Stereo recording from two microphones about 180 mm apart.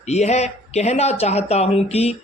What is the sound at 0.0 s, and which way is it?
A man's voice, 40° left (ahead or behind).